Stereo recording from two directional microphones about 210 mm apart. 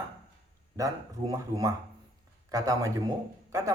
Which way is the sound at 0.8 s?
15° right (ahead or behind).